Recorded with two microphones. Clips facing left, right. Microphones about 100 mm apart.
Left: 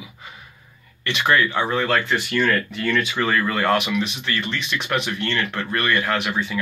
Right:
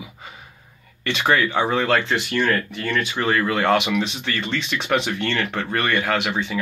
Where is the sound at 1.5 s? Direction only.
25° right (ahead or behind).